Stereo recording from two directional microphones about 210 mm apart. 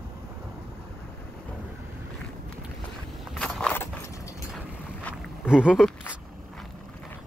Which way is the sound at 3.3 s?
5° left (ahead or behind).